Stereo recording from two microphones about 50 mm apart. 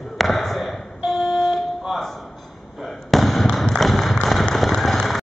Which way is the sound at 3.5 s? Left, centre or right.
Centre.